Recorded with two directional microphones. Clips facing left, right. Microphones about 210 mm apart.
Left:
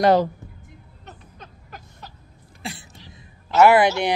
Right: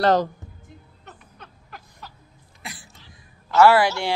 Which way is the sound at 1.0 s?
20° left (ahead or behind).